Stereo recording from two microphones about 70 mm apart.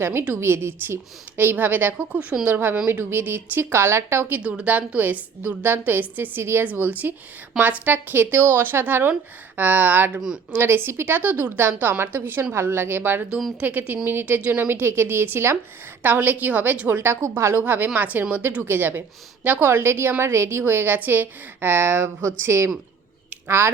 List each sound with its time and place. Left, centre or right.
0.0 s a woman's voice: right
2.1 s speech: centre
2.5 s a woman's voice: right
4.3 s a woman's voice: centre; by 6.7 s right
6.7 s a woman's voice: right
10.2 s speech: centre
10.5 s a woman's voice: right
16.0 s a woman's voice: right
17.2 s a woman's voice: right
17.6 s a woman's voice: right